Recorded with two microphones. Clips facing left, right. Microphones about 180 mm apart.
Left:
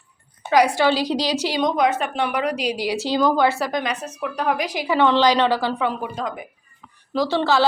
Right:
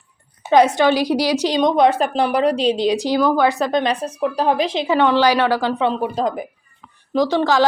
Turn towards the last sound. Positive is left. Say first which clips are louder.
# right 3 dB
turn(degrees=-15)  # may be behind; listen again after turning